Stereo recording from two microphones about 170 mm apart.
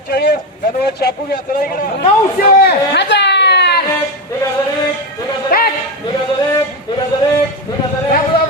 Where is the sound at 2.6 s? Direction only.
80° left.